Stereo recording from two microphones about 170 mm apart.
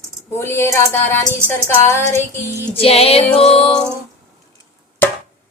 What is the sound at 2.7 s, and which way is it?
Music, 35° left (ahead or behind).